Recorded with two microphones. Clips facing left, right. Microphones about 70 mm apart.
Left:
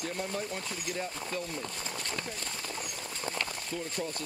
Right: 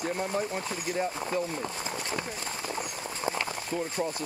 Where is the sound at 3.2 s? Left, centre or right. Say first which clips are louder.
Right 5 dB; centre.